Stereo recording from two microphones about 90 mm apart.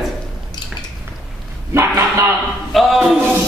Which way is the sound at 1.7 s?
30° right (ahead or behind).